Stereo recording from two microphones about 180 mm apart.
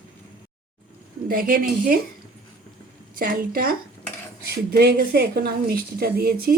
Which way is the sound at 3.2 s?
50° right (ahead or behind).